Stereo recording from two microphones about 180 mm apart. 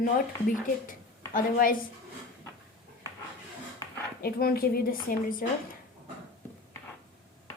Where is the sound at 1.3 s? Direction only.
50° left (ahead or behind).